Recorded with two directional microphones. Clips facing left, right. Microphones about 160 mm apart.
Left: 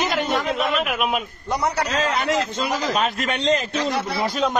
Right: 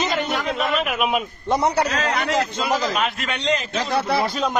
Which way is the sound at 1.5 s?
25° right (ahead or behind).